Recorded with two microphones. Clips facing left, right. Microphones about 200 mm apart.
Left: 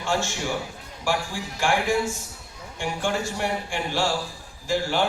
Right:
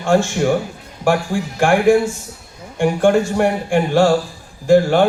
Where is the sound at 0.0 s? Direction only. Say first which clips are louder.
Right 11 dB; 55° right (ahead or behind).